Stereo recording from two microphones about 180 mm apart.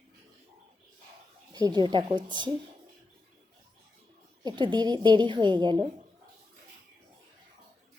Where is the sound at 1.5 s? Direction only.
20° right (ahead or behind).